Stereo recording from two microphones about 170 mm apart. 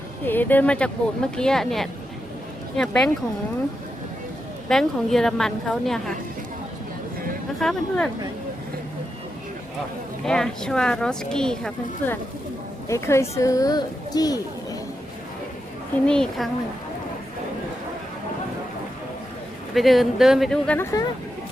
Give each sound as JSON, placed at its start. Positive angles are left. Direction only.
{"t": 0.3, "sound": "speech", "side_deg": 10}
{"t": 4.7, "sound": "speech", "side_deg": 0}
{"t": 7.6, "sound": "speech", "side_deg": 5}
{"t": 10.2, "sound": "speech", "side_deg": 5}
{"t": 16.0, "sound": "speech", "side_deg": 5}
{"t": 19.7, "sound": "speech", "side_deg": 0}